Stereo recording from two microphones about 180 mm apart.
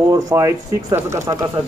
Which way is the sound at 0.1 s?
20° right (ahead or behind).